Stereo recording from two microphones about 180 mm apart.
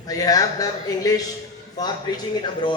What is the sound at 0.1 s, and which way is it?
Speech, 20° left (ahead or behind).